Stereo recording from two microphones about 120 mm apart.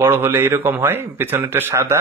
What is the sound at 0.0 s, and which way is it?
A man's voice, 20° right (ahead or behind).